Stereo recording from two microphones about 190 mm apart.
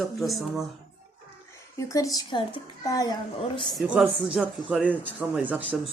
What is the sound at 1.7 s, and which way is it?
A woman's voice, 15° left (ahead or behind).